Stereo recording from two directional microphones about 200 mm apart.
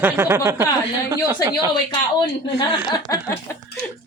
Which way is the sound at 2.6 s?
20° left (ahead or behind).